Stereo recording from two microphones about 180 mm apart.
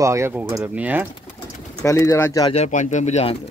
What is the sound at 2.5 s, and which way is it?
Speech, 40° left (ahead or behind).